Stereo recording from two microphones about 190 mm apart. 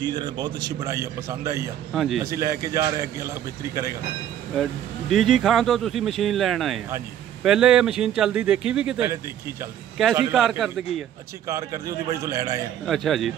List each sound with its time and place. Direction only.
0.0 s a man's voice: 20° right (ahead or behind)
2.0 s speech: centre (ahead or behind)
2.2 s a man's voice: 15° right (ahead or behind)
5.1 s speech: centre (ahead or behind)
10.3 s speech: centre (ahead or behind)
11.4 s a man's voice: 15° right (ahead or behind)
12.8 s speech: centre (ahead or behind)